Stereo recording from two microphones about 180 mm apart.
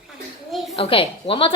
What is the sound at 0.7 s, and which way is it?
Speech, 30° left (ahead or behind).